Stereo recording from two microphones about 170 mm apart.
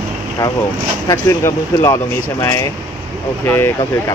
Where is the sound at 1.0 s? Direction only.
15° left (ahead or behind).